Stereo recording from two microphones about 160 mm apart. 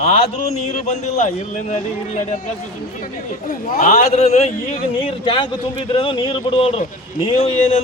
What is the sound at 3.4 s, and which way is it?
Speech, 55° left (ahead or behind).